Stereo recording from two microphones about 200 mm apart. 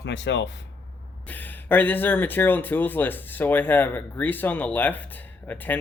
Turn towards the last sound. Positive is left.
turn(degrees=10)  # may be behind; listen again after turning